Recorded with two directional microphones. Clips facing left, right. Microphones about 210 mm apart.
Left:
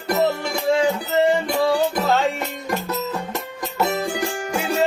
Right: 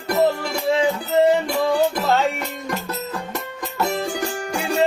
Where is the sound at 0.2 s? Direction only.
5° right (ahead or behind).